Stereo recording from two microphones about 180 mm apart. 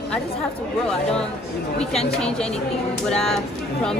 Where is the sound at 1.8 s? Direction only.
5° left (ahead or behind).